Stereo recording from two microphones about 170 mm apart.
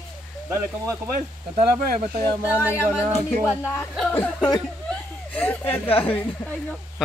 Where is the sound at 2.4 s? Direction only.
10° right (ahead or behind).